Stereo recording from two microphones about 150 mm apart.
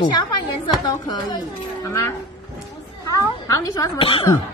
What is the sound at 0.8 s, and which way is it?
Speech, 30° left (ahead or behind).